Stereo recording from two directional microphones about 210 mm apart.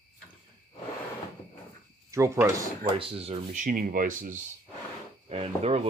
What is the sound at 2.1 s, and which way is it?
Speech, 15° right (ahead or behind).